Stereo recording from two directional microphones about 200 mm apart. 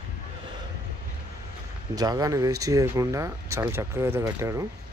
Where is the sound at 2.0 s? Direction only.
15° right (ahead or behind).